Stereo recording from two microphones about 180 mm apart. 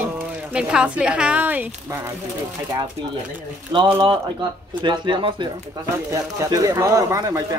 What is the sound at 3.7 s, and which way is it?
Speech, 25° right (ahead or behind).